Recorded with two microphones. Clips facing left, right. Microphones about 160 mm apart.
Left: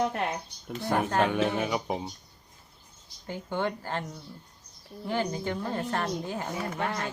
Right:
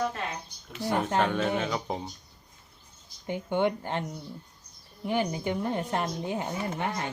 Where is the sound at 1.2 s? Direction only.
10° left (ahead or behind).